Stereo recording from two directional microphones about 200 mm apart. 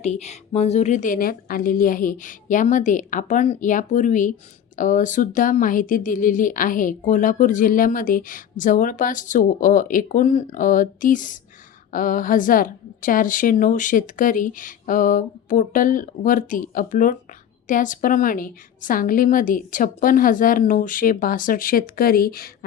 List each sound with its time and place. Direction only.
0.0 s a woman's voice: 35° left (ahead or behind)